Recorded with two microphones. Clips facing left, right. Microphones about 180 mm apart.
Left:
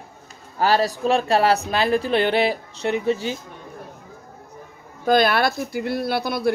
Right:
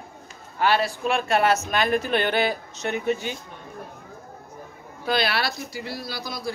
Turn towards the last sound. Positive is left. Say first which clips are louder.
# left 10 dB
turn(degrees=60)  # may be behind; listen again after turning